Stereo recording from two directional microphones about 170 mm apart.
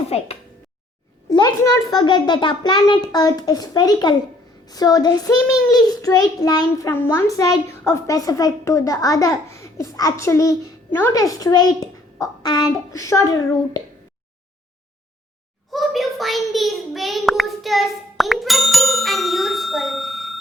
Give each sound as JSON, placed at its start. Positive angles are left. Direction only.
{"t": 0.1, "sound": "a woman's voice", "side_deg": 35}
{"t": 1.3, "sound": "a child's voice", "side_deg": 25}
{"t": 15.7, "sound": "child singing", "side_deg": 0}